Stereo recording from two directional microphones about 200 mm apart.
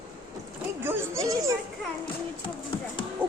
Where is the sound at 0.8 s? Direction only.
15° right (ahead or behind).